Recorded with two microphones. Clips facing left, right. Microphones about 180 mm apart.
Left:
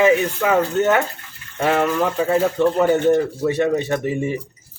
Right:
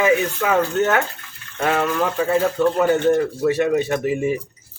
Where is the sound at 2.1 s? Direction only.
20° left (ahead or behind).